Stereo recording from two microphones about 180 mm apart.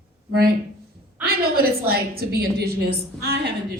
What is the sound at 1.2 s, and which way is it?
A woman's voice, 55° right (ahead or behind).